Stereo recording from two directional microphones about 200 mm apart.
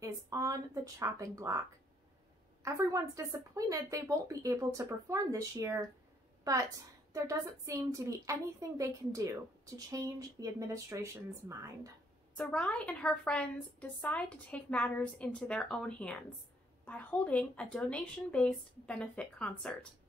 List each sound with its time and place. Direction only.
0.0 s a woman's voice: 15° right (ahead or behind)
2.6 s a woman's voice: 15° right (ahead or behind)
7.1 s a woman's voice: 15° right (ahead or behind)
12.4 s a woman's voice: 5° left (ahead or behind)